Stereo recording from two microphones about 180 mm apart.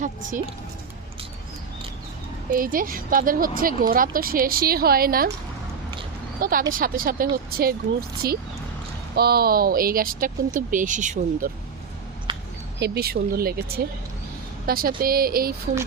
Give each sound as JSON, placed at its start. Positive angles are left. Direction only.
{"t": 0.0, "sound": "a woman's voice", "side_deg": -45}
{"t": 2.5, "sound": "a woman's voice", "side_deg": -50}
{"t": 6.4, "sound": "a woman's voice", "side_deg": -50}
{"t": 12.3, "sound": "a sound", "side_deg": -25}
{"t": 12.8, "sound": "speech", "side_deg": -60}